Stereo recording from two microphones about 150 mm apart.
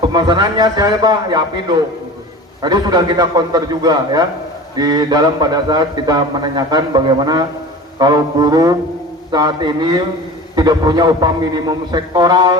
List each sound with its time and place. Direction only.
0.1 s a man's voice: 30° right (ahead or behind)